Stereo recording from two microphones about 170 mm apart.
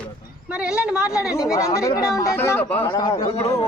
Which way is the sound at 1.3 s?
20° left (ahead or behind).